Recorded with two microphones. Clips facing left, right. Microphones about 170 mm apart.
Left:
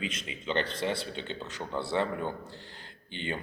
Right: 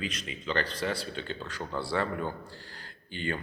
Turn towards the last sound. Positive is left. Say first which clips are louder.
# right 2 dB
turn(degrees=20)  # may be behind; listen again after turning